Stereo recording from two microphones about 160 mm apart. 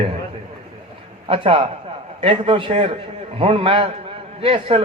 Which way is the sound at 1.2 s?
35° right (ahead or behind).